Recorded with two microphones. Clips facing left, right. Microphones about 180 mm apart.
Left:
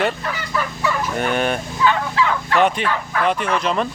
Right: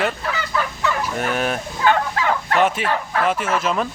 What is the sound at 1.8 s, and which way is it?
Fowl, 50° right (ahead or behind).